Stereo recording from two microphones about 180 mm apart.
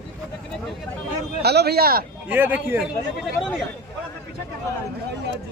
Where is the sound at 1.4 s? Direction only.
65° right (ahead or behind).